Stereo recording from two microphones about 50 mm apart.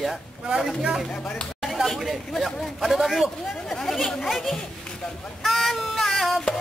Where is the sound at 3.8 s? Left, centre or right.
Centre.